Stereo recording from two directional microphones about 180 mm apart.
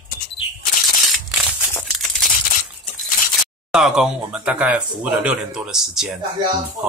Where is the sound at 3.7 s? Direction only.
5° right (ahead or behind).